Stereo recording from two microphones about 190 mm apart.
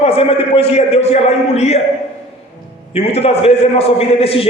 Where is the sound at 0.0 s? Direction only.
30° left (ahead or behind).